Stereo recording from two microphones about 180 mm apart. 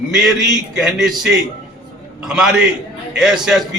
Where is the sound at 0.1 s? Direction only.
Centre (ahead or behind).